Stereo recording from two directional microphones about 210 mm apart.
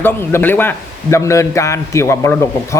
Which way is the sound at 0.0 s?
10° left (ahead or behind).